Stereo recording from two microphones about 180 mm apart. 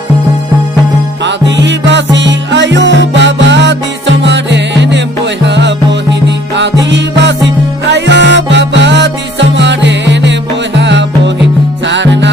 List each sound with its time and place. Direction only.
1.2 s music: 85° right
6.9 s music: 80° right